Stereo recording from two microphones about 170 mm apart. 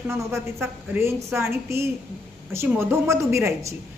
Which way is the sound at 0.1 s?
15° right (ahead or behind).